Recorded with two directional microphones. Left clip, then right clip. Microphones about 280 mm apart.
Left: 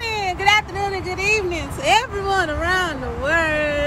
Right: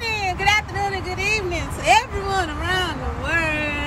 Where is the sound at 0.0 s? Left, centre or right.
Centre.